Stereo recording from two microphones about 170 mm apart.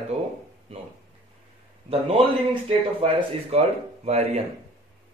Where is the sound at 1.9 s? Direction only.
35° right (ahead or behind).